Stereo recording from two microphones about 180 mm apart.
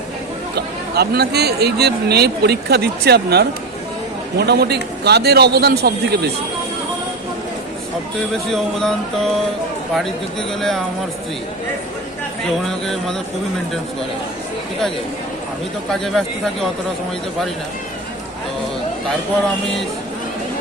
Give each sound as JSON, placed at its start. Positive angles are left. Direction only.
{"t": 0.5, "sound": "speech", "side_deg": -65}
{"t": 8.3, "sound": "speech", "side_deg": 0}
{"t": 10.6, "sound": "speech", "side_deg": 0}
{"t": 12.6, "sound": "speech", "side_deg": 0}
{"t": 15.9, "sound": "speech", "side_deg": 0}